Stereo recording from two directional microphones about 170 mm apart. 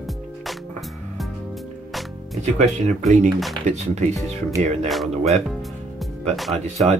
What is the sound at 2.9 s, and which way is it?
Speech, 45° right (ahead or behind).